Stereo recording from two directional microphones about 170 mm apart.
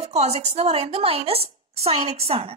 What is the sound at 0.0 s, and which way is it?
A woman's voice, 40° right (ahead or behind).